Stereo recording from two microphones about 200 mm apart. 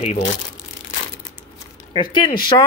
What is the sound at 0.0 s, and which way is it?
Speech, 30° left (ahead or behind).